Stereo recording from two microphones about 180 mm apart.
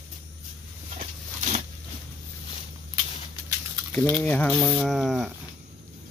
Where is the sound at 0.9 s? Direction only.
40° right (ahead or behind).